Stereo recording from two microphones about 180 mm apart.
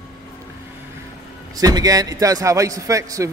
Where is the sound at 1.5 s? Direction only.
20° right (ahead or behind).